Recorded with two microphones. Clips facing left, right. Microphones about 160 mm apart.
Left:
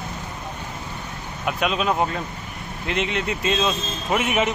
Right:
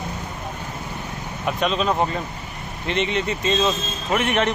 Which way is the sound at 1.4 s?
5° left (ahead or behind).